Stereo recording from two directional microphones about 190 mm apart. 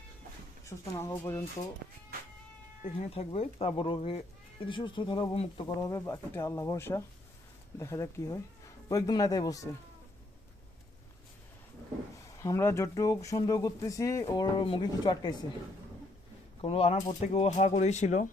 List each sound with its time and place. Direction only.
0.6 s speech: 15° left (ahead or behind)
2.8 s speech: 35° left (ahead or behind); by 9.6 s 20° left (ahead or behind)
12.4 s speech: 15° left (ahead or behind)
16.6 s speech: 30° left (ahead or behind)